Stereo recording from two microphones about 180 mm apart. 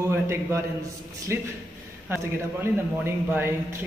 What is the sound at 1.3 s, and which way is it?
A man's voice, 15° right (ahead or behind).